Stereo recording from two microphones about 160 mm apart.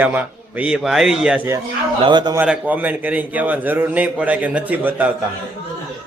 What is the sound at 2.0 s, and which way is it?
Speech, 30° right (ahead or behind).